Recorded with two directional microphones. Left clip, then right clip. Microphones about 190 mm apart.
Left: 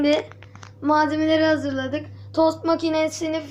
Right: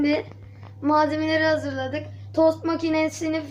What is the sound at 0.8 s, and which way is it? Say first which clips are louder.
Female singing: left 1 dB; 20° left (ahead or behind).